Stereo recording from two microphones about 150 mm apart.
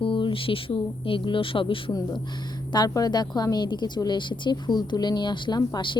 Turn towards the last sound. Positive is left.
turn(degrees=30)  # may be behind; listen again after turning